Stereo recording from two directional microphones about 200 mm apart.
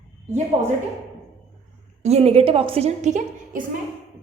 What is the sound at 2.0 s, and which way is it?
A woman's voice, 30° right (ahead or behind).